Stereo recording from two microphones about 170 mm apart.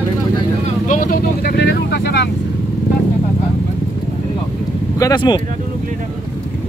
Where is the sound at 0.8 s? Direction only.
55° left (ahead or behind); by 2.1 s 80° left.